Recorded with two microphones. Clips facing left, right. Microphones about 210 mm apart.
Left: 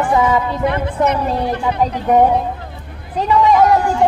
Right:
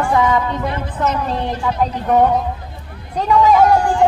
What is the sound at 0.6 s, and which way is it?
Speech, 60° left (ahead or behind).